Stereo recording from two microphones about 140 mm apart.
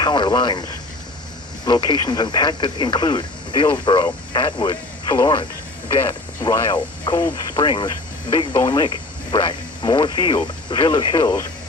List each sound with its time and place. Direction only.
0.0 s speech: 30° left (ahead or behind)
1.6 s speech: 35° left (ahead or behind)